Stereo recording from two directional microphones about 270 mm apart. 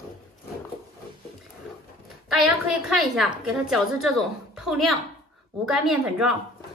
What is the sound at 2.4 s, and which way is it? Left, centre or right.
A woman's voice, centre.